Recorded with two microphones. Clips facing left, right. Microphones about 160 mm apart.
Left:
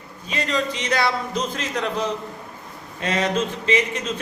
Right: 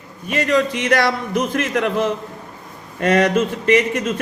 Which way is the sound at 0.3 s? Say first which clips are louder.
Right 7 dB; 65° right (ahead or behind).